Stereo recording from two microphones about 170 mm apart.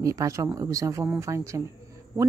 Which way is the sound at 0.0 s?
20° right (ahead or behind).